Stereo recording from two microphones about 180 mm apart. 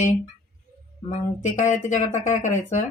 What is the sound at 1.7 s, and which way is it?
Speech, 45° left (ahead or behind).